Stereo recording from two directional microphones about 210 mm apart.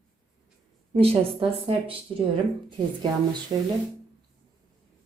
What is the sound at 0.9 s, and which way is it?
Speech, 30° right (ahead or behind).